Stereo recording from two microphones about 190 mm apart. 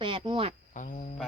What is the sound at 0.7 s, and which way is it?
Cricket, 40° left (ahead or behind).